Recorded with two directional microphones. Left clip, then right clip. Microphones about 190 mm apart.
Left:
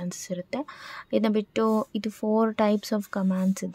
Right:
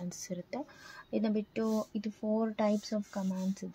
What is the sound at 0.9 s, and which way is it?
Speech, 45° left (ahead or behind).